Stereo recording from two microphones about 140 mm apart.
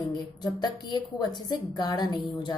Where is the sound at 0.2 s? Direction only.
30° left (ahead or behind).